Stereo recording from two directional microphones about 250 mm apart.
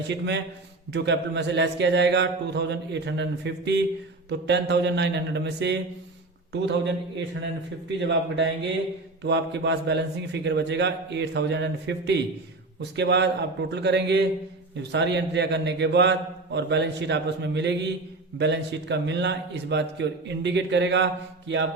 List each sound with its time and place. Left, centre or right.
0.1 s a man's voice: right